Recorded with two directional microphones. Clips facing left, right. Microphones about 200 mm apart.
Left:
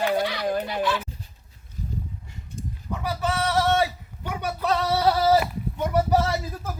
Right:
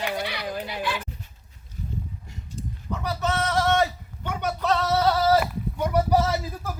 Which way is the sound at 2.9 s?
10° left (ahead or behind).